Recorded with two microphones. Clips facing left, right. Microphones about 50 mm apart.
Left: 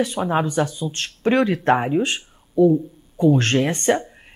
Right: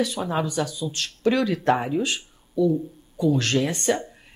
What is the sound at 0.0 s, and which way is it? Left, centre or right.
Speech, left.